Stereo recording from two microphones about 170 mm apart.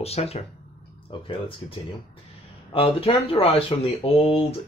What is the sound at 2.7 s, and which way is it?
Speech, 35° left (ahead or behind).